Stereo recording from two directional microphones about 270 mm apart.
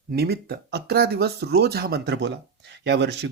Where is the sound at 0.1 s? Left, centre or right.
Right.